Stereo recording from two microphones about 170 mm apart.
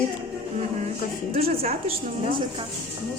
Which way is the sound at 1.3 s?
35° right (ahead or behind).